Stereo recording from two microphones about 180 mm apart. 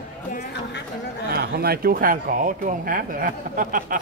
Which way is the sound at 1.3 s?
60° right (ahead or behind).